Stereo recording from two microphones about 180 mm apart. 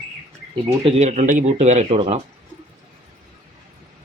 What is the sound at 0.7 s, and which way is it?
Speech, 35° right (ahead or behind).